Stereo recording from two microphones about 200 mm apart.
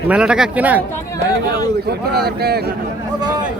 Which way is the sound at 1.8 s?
55° right (ahead or behind).